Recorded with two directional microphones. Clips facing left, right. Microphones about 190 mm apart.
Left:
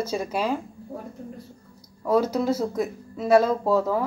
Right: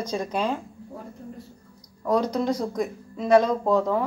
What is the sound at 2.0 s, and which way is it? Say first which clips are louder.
Speech: left 1 dB; 5° left (ahead or behind).